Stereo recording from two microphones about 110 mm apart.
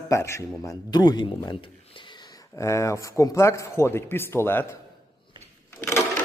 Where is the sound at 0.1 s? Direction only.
25° left (ahead or behind).